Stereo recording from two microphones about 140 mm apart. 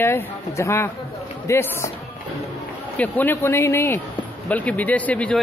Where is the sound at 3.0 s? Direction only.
15° left (ahead or behind).